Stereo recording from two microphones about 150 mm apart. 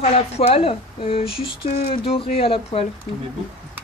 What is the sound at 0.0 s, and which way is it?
Speech, 40° left (ahead or behind).